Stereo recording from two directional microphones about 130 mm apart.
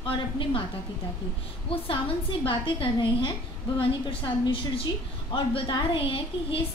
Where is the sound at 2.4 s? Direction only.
40° left (ahead or behind).